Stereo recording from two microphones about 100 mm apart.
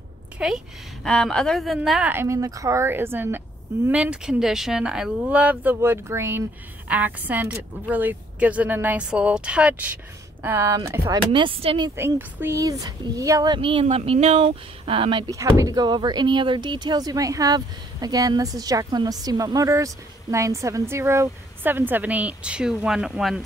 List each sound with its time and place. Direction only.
0.4 s a woman's voice: 10° right (ahead or behind)
1.0 s speech: 5° left (ahead or behind)
2.2 s a woman's voice: 30° right (ahead or behind)
10.7 s speech: 35° right (ahead or behind)
11.3 s speech: 60° right (ahead or behind)
11.9 s a woman's voice: 20° right (ahead or behind)
12.5 s speech: 40° right (ahead or behind)
13.5 s speech: 60° right (ahead or behind)
15.2 s speech: 35° right (ahead or behind); by 23.4 s 5° right (ahead or behind)